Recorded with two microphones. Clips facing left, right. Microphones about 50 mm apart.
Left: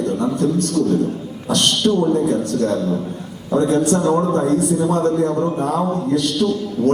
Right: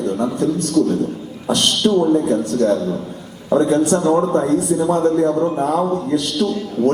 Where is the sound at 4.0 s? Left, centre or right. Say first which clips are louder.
Right 1 dB; centre.